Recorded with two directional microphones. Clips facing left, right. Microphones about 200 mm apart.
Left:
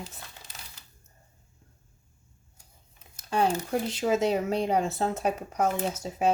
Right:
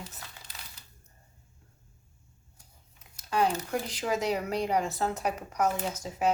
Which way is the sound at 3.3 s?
30° left (ahead or behind).